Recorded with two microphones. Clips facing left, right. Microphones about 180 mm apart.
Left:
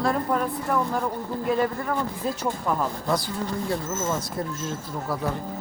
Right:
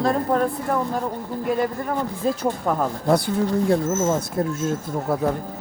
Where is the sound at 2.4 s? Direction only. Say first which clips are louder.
Right 4 dB; 55° right (ahead or behind).